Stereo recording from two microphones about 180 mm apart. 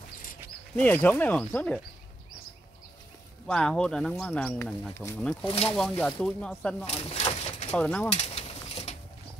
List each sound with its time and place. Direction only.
0.7 s speech: 10° left (ahead or behind)
3.4 s speech: 5° left (ahead or behind)
5.4 s speech: 30° left (ahead or behind)
5.8 s speech: 5° left (ahead or behind)
6.8 s a sound: 35° left (ahead or behind)
7.7 s speech: 5° left (ahead or behind)
8.1 s pigeon: 35° left (ahead or behind)